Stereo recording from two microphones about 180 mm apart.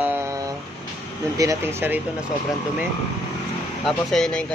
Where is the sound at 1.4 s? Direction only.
15° right (ahead or behind).